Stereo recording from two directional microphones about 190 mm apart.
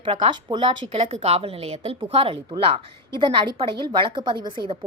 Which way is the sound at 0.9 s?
35° right (ahead or behind).